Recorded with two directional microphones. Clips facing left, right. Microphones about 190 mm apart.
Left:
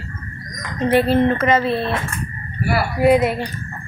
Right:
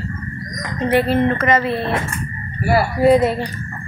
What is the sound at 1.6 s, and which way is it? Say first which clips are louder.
Speech: even; 15° right (ahead or behind).